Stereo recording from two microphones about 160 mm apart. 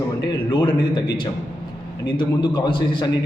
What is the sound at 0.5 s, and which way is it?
A man's voice, 30° left (ahead or behind).